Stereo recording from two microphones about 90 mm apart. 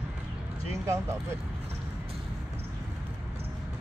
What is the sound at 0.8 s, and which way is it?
Speech, 30° right (ahead or behind).